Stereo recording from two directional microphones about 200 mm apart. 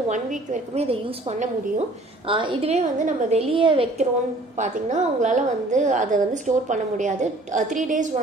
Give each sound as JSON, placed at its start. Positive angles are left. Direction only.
{"t": 0.1, "sound": "a woman's voice", "side_deg": -40}